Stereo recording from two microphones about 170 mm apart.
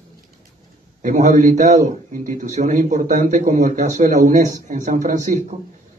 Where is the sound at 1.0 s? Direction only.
45° right (ahead or behind).